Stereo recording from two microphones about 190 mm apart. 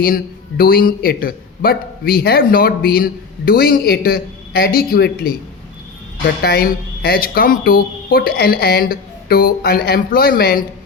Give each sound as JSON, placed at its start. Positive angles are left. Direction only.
{"t": 0.0, "sound": "a man's voice", "side_deg": 50}